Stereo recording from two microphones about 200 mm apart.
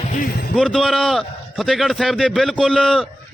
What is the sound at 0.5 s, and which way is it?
A man's voice, centre (ahead or behind).